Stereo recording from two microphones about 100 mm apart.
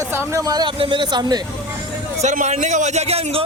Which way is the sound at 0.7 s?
60° right (ahead or behind).